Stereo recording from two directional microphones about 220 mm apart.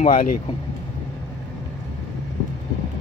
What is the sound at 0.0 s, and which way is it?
Speech, 40° left (ahead or behind).